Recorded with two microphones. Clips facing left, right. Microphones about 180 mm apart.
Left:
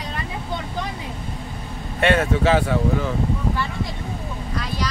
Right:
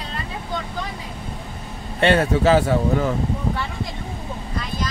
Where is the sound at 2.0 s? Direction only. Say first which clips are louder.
Right 2 dB; 35° right (ahead or behind).